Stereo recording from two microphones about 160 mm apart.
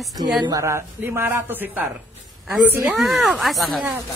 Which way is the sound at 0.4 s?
20° right (ahead or behind).